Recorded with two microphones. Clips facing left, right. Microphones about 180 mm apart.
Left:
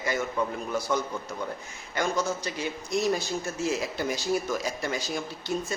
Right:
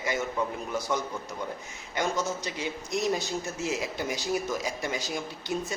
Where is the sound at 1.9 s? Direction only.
20° right (ahead or behind).